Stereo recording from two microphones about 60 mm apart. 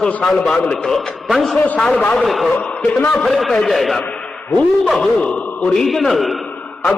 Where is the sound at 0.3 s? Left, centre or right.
Centre.